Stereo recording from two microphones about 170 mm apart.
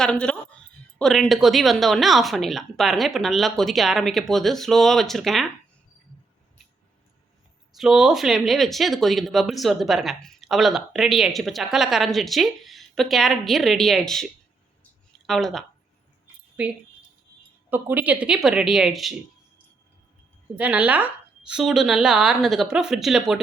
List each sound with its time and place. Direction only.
0.0 s speech: 5° left (ahead or behind)
7.8 s speech: 5° right (ahead or behind)
15.3 s speech: centre (ahead or behind)
17.7 s speech: 10° right (ahead or behind)
20.6 s speech: 10° right (ahead or behind)